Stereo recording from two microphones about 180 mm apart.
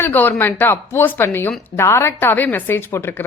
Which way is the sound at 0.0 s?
10° left (ahead or behind).